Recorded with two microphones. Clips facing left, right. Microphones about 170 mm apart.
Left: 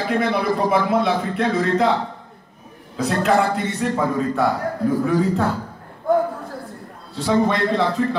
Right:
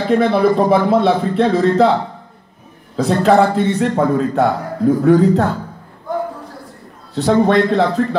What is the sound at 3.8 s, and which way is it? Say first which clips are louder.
Speech: right 6 dB; 70° right (ahead or behind).